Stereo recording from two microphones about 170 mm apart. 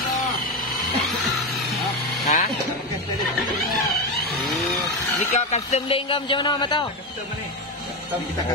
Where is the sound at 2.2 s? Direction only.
55° left (ahead or behind).